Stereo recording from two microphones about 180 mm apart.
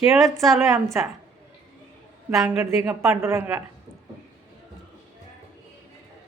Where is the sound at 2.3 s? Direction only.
5° right (ahead or behind).